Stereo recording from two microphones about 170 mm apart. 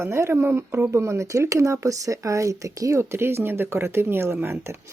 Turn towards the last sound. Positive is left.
turn(degrees=-15)  # may be behind; listen again after turning